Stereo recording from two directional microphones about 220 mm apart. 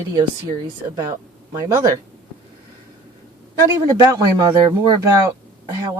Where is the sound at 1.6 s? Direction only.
15° right (ahead or behind).